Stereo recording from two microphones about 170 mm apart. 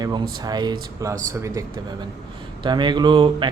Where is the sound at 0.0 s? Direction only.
25° right (ahead or behind).